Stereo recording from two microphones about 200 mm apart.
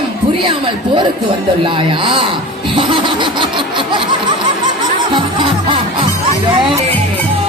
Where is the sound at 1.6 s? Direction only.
25° right (ahead or behind).